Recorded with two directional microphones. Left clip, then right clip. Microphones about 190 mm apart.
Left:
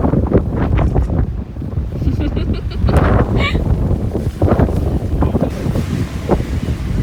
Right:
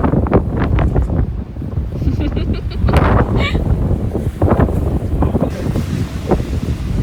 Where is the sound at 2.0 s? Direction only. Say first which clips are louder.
Even; centre (ahead or behind).